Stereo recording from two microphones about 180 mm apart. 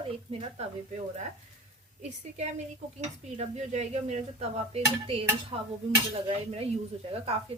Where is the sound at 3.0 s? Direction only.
35° right (ahead or behind).